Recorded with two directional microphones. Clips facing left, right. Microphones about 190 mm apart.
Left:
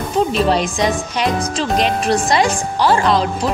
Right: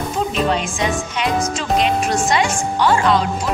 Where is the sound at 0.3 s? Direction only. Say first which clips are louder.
Left 3 dB; 35° left (ahead or behind).